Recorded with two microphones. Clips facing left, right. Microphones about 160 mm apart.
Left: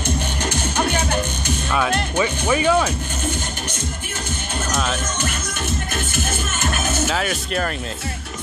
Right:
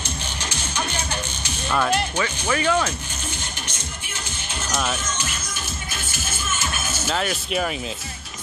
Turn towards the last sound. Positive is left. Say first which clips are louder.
# left 1 dB
turn(degrees=-5)  # may be behind; listen again after turning